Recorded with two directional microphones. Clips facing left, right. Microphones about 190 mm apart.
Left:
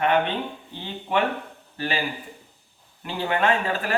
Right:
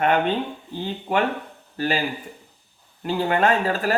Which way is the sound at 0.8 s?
40° right (ahead or behind).